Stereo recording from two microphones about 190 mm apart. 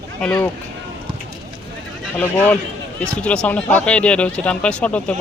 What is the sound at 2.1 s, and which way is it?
Speech, 10° left (ahead or behind).